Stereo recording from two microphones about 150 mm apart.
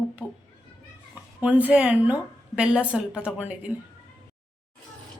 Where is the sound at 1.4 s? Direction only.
10° right (ahead or behind).